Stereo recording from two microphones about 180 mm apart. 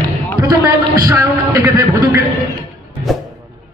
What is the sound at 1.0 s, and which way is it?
A man's voice, 15° right (ahead or behind).